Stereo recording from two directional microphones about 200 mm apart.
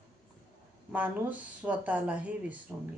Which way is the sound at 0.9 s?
10° right (ahead or behind).